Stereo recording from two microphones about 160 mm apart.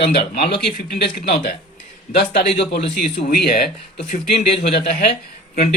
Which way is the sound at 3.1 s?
80° left.